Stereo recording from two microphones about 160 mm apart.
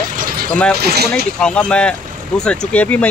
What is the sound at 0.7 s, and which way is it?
Speech, 75° right (ahead or behind).